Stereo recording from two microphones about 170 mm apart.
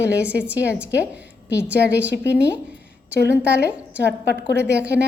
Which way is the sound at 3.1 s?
75° left (ahead or behind).